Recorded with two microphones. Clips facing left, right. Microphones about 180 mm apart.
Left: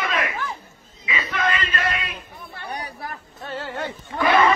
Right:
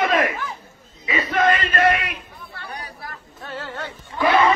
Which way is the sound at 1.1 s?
45° right (ahead or behind).